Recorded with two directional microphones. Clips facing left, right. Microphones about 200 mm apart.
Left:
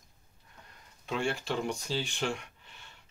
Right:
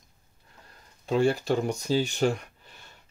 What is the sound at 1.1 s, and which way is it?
Speech, 40° right (ahead or behind).